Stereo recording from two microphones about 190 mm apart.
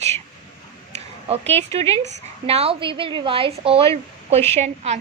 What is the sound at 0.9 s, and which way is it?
A woman's voice, 35° right (ahead or behind).